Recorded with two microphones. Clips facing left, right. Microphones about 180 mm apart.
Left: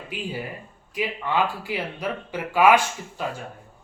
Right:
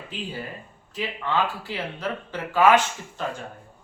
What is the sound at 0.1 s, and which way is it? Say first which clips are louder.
Speech: left 3 dB; 15° left (ahead or behind).